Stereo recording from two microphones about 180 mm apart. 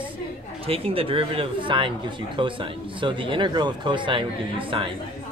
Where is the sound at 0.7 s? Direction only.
30° right (ahead or behind).